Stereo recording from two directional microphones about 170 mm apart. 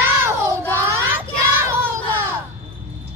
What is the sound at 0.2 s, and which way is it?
Child singing, 15° right (ahead or behind).